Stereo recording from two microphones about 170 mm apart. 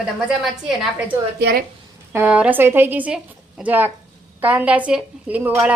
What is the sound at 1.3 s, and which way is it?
Speech, 75° right (ahead or behind).